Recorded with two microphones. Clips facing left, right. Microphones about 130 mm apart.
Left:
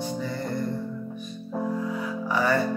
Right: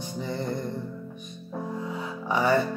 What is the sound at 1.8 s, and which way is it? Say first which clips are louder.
Music: left 4 dB; 25° right (ahead or behind).